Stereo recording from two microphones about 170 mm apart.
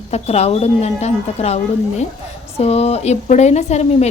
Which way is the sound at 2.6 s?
40° left (ahead or behind).